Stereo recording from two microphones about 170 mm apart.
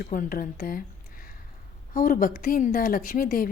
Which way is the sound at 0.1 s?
55° left (ahead or behind).